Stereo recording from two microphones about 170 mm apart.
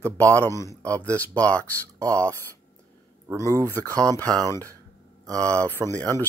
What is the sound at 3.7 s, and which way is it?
Speech, 10° left (ahead or behind).